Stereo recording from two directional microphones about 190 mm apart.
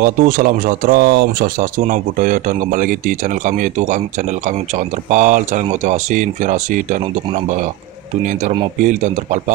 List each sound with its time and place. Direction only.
0.0 s speech: 45° right (ahead or behind)
1.8 s speech: 45° right (ahead or behind)
8.7 s speech: 40° right (ahead or behind)